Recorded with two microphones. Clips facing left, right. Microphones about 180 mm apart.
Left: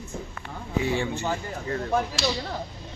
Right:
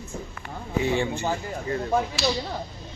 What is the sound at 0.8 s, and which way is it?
Speech, 20° right (ahead or behind).